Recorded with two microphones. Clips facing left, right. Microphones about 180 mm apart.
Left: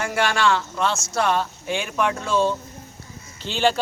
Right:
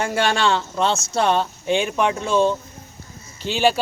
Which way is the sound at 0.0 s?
25° right (ahead or behind).